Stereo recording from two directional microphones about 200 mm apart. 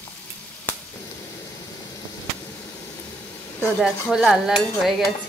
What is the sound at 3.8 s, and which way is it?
Stir, centre (ahead or behind).